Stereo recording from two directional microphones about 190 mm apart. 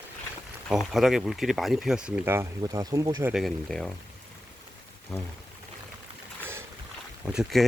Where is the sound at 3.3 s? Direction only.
Centre (ahead or behind).